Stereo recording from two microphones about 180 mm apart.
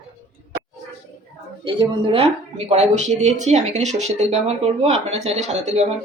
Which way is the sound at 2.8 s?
40° right (ahead or behind).